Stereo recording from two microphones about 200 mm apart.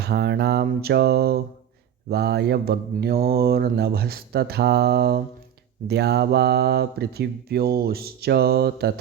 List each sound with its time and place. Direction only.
0.0 s speech: 55° right (ahead or behind)